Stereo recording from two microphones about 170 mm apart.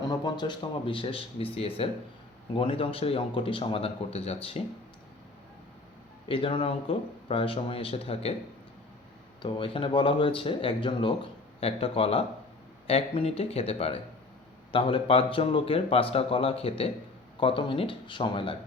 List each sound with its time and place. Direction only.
0.0 s speech: 25° left (ahead or behind)
6.2 s speech: 30° left (ahead or behind)
9.4 s speech: 30° left (ahead or behind)